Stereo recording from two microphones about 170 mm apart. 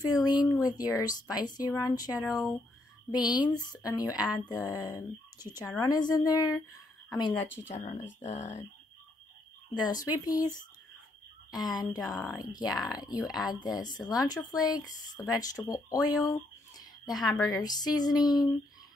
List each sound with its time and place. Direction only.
0.0 s speech: 25° left (ahead or behind)
8.0 s speech: 45° left (ahead or behind)
10.0 s speech: 20° left (ahead or behind)